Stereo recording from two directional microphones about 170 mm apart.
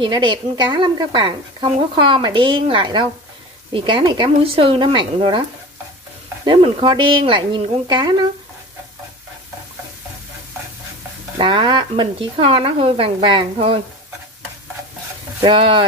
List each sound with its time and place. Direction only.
0.0 s speech: 25° right (ahead or behind)
6.4 s speech: 30° right (ahead or behind)
11.3 s speech: 30° right (ahead or behind)
15.4 s speech: 30° right (ahead or behind)